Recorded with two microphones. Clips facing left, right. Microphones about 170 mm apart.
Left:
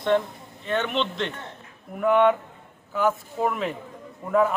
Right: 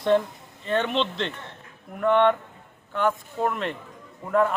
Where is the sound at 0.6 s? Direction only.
Centre (ahead or behind).